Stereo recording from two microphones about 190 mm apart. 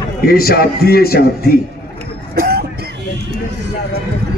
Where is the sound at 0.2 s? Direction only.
50° left (ahead or behind).